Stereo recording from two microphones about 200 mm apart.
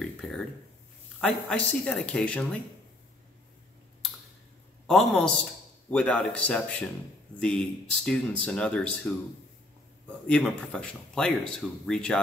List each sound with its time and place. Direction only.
0.0 s speech: 5° left (ahead or behind)
4.8 s speech: 5° left (ahead or behind)
10.2 s speech: 5° left (ahead or behind)